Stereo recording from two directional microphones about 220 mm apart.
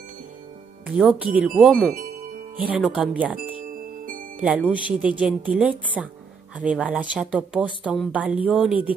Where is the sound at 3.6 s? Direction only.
40° right (ahead or behind).